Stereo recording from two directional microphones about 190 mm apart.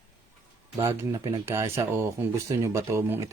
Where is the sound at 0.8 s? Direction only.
15° right (ahead or behind).